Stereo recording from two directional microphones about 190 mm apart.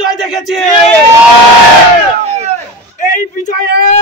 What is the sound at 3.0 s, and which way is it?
Speech, 40° left (ahead or behind).